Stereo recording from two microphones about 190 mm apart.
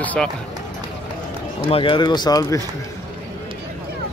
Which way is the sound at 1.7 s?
25° left (ahead or behind).